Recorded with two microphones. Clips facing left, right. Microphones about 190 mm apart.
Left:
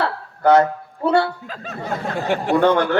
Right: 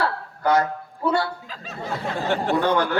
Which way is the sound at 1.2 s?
60° left (ahead or behind).